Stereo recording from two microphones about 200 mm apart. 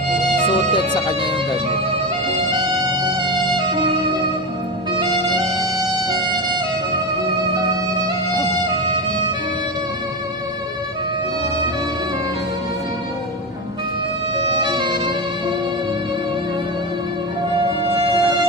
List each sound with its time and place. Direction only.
3.2 s music: 25° right (ahead or behind)
14.6 s music: 20° right (ahead or behind)
17.6 s music: 25° right (ahead or behind)